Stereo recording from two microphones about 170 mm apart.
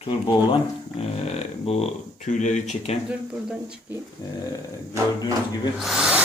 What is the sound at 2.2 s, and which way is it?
Speech, 45° left (ahead or behind).